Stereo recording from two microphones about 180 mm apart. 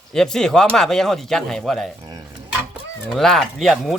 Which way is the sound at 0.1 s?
5° left (ahead or behind).